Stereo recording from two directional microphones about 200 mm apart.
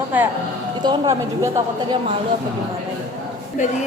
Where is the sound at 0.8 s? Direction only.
20° right (ahead or behind).